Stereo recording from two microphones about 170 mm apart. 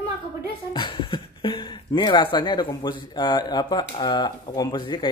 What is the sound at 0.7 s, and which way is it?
Speech, 25° left (ahead or behind).